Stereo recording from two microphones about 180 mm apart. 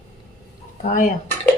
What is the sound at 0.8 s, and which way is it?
Dishes, 45° left (ahead or behind).